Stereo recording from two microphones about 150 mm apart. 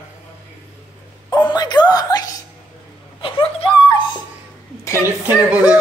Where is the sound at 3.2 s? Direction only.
35° left (ahead or behind).